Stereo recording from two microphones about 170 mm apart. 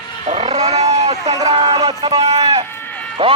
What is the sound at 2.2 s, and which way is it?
Speech, 35° right (ahead or behind).